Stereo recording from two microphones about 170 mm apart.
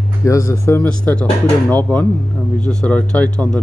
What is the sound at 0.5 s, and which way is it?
Speech, 15° left (ahead or behind).